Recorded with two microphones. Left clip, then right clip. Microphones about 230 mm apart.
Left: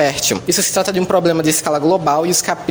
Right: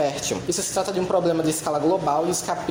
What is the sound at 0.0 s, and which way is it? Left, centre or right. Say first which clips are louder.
Speech: left 8 dB; left.